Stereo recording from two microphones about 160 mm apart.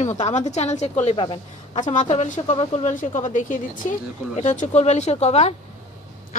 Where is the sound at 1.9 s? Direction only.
50° left (ahead or behind).